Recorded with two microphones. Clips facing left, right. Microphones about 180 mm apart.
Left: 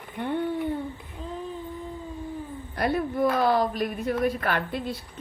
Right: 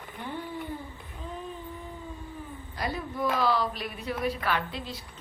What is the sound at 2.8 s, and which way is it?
A woman's voice, 60° left (ahead or behind).